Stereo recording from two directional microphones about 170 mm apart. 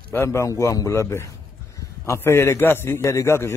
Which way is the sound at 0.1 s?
15° left (ahead or behind).